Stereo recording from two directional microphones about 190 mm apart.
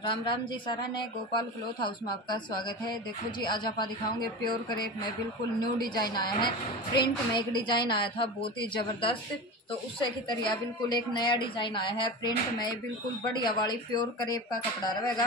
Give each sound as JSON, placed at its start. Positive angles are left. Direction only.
{"t": 0.0, "sound": "a woman's voice", "side_deg": 25}